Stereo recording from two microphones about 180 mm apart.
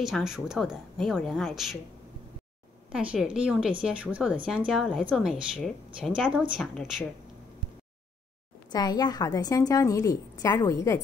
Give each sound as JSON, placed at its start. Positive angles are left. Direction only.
{"t": 0.0, "sound": "a woman's voice", "side_deg": -5}
{"t": 2.9, "sound": "a woman's voice", "side_deg": -5}
{"t": 8.7, "sound": "a woman's voice", "side_deg": 20}